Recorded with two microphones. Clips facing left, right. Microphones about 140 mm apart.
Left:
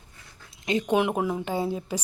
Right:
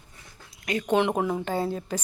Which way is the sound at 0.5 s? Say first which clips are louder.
Left 3 dB; 25° left (ahead or behind).